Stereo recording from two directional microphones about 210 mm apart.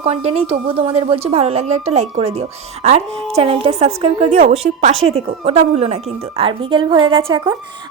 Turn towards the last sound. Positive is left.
turn(degrees=-25)  # may be behind; listen again after turning